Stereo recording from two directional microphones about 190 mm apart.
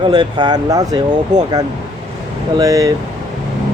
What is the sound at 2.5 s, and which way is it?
Speech, 20° right (ahead or behind).